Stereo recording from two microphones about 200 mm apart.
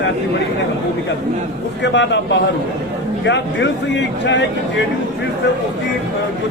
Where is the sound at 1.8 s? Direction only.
60° left (ahead or behind).